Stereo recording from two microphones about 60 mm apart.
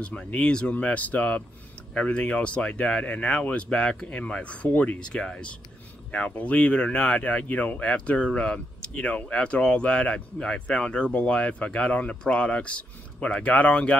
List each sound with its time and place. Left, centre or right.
0.0 s speech: centre